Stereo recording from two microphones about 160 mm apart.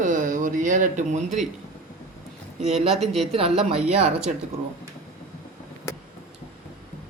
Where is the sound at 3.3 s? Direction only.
35° right (ahead or behind).